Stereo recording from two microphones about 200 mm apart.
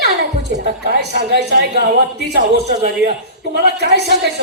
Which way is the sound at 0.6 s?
55° right (ahead or behind).